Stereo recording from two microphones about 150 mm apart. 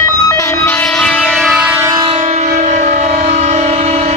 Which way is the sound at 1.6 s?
15° right (ahead or behind).